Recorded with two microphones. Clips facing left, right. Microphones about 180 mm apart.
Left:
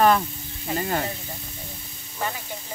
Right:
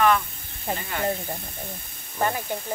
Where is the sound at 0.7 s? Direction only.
40° left (ahead or behind).